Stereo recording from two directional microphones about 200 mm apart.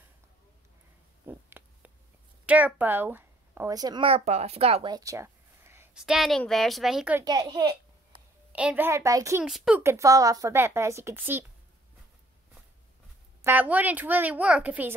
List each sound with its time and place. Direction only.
1.2 s a sound: 10° right (ahead or behind)
2.4 s a woman's voice: 5° right (ahead or behind); by 4.9 s 30° right (ahead or behind)
4.9 s a woman's voice: 15° right (ahead or behind)
7.2 s a woman's voice: 20° right (ahead or behind)
8.5 s a woman's voice: 5° right (ahead or behind)
9.4 s a woman's voice: 5° right (ahead or behind)
13.4 s a woman's voice: 10° right (ahead or behind)